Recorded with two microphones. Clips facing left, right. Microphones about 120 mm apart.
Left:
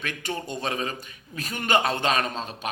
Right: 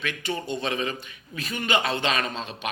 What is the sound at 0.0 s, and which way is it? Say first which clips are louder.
A man's voice: right 1 dB; 45° left (ahead or behind).